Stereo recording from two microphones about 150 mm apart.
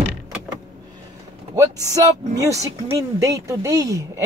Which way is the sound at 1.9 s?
20° right (ahead or behind).